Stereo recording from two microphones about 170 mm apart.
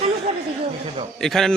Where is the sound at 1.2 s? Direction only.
Centre (ahead or behind).